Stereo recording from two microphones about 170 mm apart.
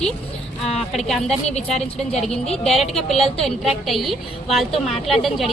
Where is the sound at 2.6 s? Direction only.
Centre (ahead or behind).